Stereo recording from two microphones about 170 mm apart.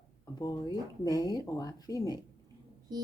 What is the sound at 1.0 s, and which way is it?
Speech, 25° left (ahead or behind).